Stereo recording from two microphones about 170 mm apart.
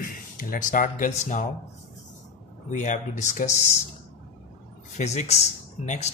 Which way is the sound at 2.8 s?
45° left (ahead or behind).